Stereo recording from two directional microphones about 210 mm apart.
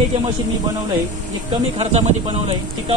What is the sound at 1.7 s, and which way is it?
Speech, 30° right (ahead or behind).